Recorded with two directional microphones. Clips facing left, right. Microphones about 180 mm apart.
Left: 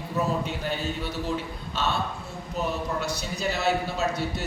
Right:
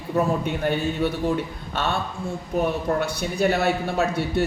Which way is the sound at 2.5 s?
60° right (ahead or behind).